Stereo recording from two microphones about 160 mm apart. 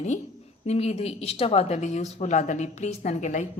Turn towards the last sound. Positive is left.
turn(degrees=50)  # may be behind; listen again after turning